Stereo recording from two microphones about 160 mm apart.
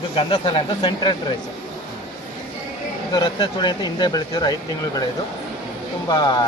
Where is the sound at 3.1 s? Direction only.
30° left (ahead or behind).